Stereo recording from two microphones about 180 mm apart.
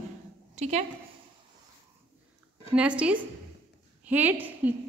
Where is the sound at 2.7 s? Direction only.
5° right (ahead or behind).